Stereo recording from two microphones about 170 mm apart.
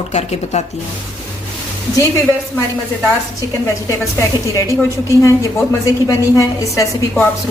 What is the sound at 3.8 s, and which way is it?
A woman's voice, 15° left (ahead or behind).